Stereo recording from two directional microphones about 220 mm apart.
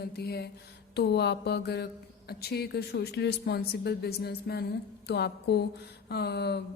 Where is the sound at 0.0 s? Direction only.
45° left (ahead or behind).